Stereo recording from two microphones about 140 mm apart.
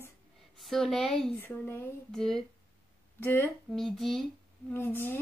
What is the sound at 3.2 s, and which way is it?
Speech, 15° left (ahead or behind).